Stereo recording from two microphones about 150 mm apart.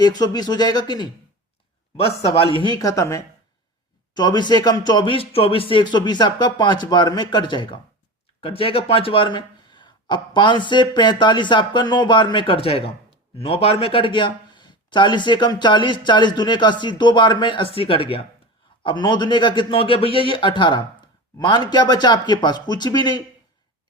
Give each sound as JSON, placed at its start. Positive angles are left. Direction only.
{"t": 0.0, "sound": "speech", "side_deg": 25}
{"t": 2.0, "sound": "speech", "side_deg": 40}